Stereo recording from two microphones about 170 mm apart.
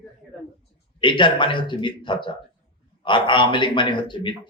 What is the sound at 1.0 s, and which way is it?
A man's voice, 30° left (ahead or behind).